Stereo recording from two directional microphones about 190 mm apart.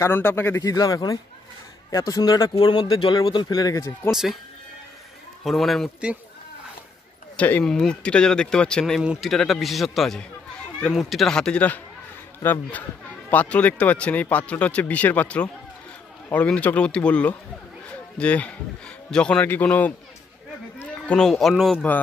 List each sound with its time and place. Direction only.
0.0 s speech: 10° left (ahead or behind)
4.1 s speech: centre (ahead or behind)
5.4 s speech: centre (ahead or behind)
7.3 s speech: 10° left (ahead or behind)
21.1 s speech: centre (ahead or behind)